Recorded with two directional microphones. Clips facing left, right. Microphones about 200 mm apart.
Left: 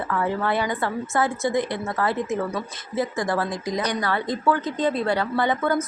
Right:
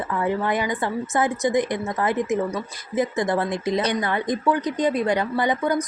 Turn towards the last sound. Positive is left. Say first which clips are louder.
# even
turn(degrees=-15)  # may be behind; listen again after turning